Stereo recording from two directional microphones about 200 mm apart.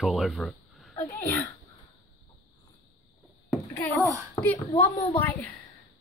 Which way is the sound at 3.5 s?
10° left (ahead or behind).